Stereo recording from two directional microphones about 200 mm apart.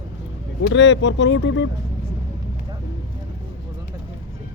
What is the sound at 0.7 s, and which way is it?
Speech, 65° left (ahead or behind).